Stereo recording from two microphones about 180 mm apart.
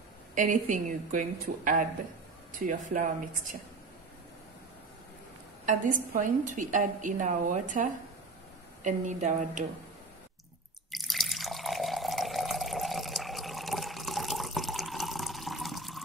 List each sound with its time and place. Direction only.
0.3 s a woman's voice: 45° right (ahead or behind)
5.7 s a woman's voice: 45° right (ahead or behind)
10.9 s water: centre (ahead or behind)